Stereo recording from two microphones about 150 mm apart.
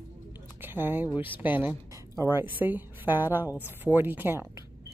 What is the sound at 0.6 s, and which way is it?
A woman's voice, 15° right (ahead or behind).